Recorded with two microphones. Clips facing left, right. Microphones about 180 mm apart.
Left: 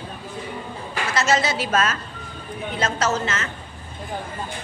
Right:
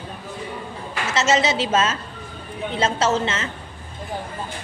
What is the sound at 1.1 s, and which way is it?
A woman's voice, 20° right (ahead or behind).